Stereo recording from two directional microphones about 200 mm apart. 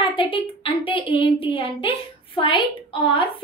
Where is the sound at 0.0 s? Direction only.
25° left (ahead or behind).